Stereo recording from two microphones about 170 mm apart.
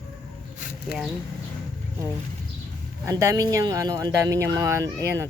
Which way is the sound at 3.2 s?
20° right (ahead or behind).